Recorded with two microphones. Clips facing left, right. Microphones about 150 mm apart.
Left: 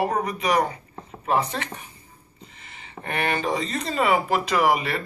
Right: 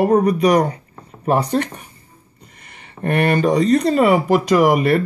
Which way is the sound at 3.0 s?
50° right (ahead or behind).